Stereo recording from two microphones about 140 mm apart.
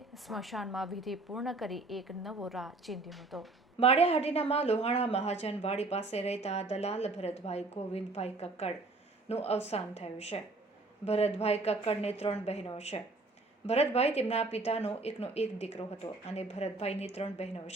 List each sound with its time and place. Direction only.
0.1 s a woman's voice: centre (ahead or behind)
3.8 s a woman's voice: 45° left (ahead or behind)